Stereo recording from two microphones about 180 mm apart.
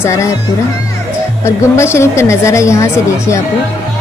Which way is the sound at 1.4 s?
15° left (ahead or behind).